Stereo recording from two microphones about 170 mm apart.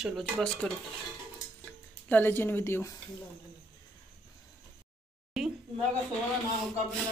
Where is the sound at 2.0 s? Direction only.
10° left (ahead or behind).